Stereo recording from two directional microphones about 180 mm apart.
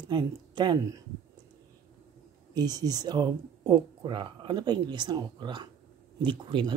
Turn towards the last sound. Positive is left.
turn(degrees=-25)  # may be behind; listen again after turning